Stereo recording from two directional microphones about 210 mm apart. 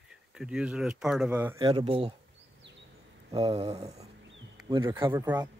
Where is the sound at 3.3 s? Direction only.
25° right (ahead or behind).